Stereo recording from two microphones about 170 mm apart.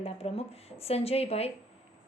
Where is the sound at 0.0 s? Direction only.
35° left (ahead or behind).